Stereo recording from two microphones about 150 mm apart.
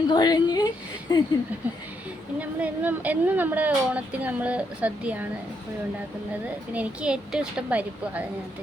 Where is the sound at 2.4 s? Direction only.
10° right (ahead or behind).